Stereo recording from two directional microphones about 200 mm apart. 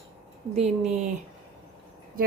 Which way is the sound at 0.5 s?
35° right (ahead or behind).